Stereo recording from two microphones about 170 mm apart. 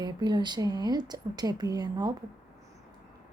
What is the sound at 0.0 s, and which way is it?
A woman's voice, 25° right (ahead or behind).